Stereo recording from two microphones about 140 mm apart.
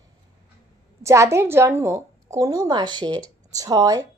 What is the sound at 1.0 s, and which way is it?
Speech, 20° right (ahead or behind).